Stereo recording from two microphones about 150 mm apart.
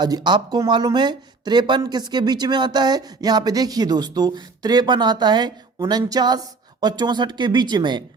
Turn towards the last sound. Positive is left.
turn(degrees=-30)  # may be behind; listen again after turning